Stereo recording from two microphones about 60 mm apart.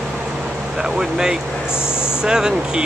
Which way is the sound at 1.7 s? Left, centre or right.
Left.